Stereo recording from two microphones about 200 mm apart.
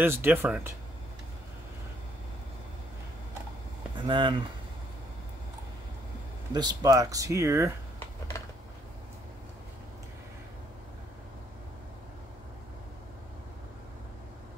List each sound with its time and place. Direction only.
0.0 s speech: 10° right (ahead or behind)
3.9 s speech: 25° right (ahead or behind)
6.5 s speech: 20° right (ahead or behind)